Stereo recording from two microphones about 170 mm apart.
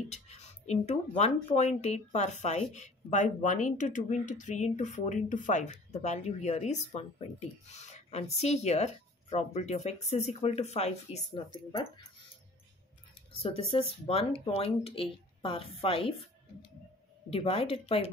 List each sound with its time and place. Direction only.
0.1 s speech: 40° left (ahead or behind)
13.3 s speech: 35° left (ahead or behind)
17.3 s speech: 35° left (ahead or behind)